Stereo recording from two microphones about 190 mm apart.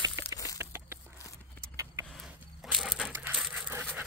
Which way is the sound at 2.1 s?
Centre (ahead or behind).